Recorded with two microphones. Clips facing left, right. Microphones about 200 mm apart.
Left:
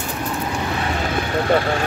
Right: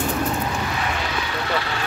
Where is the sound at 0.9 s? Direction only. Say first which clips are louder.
Left 5 dB; 45° left (ahead or behind).